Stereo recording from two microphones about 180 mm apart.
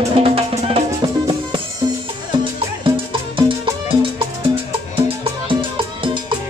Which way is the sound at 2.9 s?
30° right (ahead or behind).